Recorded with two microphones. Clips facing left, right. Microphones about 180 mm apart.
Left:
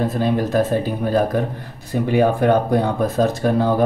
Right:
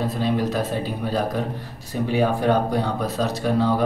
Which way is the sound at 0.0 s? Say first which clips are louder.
Left 3 dB; 50° left (ahead or behind).